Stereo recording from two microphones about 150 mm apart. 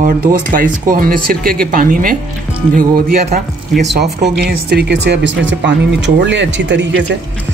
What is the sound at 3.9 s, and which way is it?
Speech, 90° right.